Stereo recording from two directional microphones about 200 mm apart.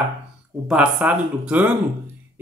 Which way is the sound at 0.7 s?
5° right (ahead or behind).